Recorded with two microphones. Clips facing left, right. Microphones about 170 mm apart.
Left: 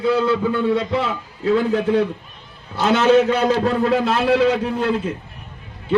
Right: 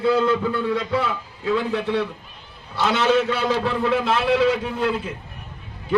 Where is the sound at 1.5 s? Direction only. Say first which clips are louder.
Left 5 dB; 45° left (ahead or behind).